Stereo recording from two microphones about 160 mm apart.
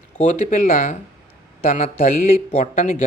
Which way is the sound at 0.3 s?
60° left (ahead or behind).